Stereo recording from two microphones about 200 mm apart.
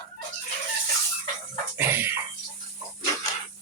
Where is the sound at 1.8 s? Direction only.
10° right (ahead or behind).